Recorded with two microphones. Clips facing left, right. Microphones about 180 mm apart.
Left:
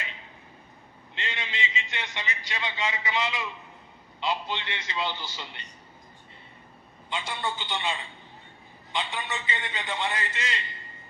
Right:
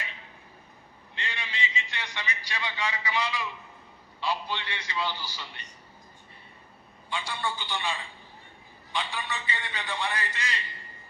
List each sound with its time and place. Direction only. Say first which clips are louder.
1.1 s a man's voice: left 2 dB; 20° left (ahead or behind)
7.1 s a man's voice: left 1 dB; 20° left (ahead or behind)